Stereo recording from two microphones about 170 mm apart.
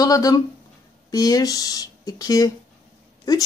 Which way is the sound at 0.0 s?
20° left (ahead or behind).